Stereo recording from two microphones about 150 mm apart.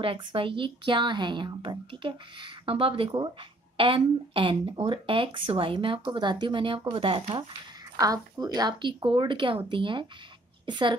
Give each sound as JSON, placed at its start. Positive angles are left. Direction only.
{"t": 0.0, "sound": "speech", "side_deg": -35}
{"t": 7.9, "sound": "a woman's voice", "side_deg": -25}